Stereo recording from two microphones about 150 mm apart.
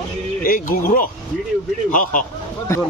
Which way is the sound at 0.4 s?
70° left (ahead or behind).